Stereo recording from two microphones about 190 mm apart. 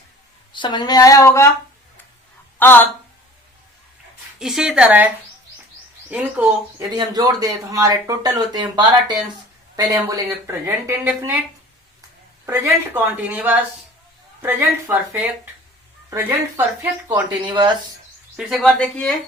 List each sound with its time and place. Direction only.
0.5 s a sound: 25° left (ahead or behind)
2.6 s a woman's voice: 10° left (ahead or behind)
4.4 s a woman's voice: 5° right (ahead or behind)
6.7 s speech: 20° right (ahead or behind)
12.5 s speech: 15° right (ahead or behind)
18.3 s a woman's voice: centre (ahead or behind)